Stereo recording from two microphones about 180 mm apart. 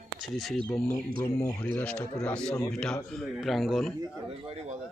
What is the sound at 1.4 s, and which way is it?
Speech, 10° left (ahead or behind).